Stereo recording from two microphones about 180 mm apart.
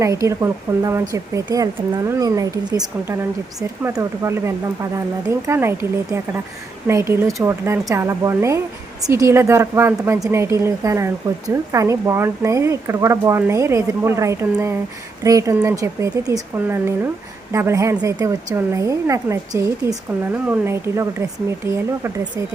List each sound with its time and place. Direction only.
0.0 s a woman's voice: 15° right (ahead or behind)